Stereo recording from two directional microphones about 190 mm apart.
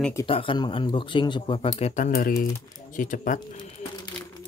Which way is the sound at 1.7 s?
35° left (ahead or behind).